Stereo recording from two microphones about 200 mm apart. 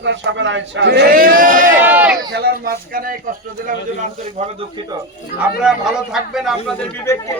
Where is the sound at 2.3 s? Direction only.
50° right (ahead or behind).